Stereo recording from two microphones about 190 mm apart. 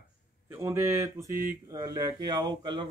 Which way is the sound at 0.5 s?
15° right (ahead or behind).